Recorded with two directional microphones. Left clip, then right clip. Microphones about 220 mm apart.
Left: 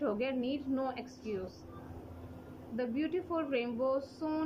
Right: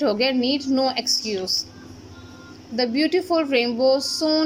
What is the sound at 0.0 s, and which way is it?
A woman's voice, 45° right (ahead or behind).